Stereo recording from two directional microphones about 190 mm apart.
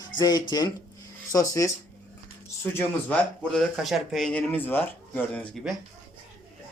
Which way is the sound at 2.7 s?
10° left (ahead or behind).